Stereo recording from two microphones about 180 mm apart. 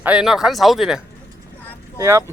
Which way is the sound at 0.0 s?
5° right (ahead or behind).